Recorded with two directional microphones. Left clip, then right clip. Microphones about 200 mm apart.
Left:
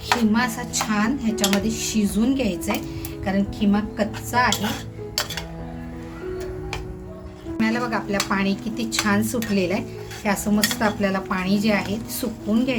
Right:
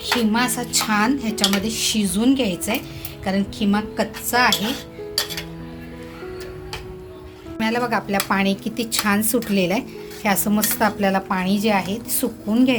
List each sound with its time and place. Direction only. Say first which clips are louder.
0.3 s speech: right 3 dB; 30° right (ahead or behind)
7.6 s speech: right 3 dB; 40° right (ahead or behind)